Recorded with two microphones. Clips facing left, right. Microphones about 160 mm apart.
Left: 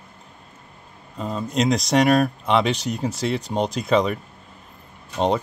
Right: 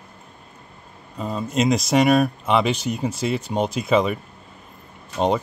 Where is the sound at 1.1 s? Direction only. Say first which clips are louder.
Even; centre (ahead or behind).